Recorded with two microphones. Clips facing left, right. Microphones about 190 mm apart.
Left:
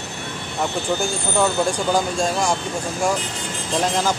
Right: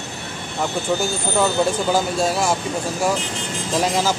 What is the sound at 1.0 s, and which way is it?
Speech, 5° right (ahead or behind).